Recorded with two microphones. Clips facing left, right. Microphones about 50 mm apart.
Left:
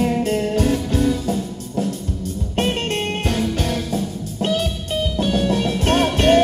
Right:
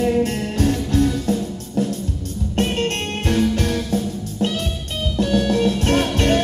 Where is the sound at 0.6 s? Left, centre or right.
Left.